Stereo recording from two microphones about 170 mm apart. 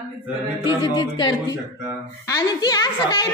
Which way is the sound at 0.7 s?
25° left (ahead or behind).